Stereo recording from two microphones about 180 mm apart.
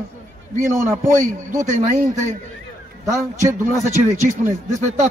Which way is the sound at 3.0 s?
15° right (ahead or behind).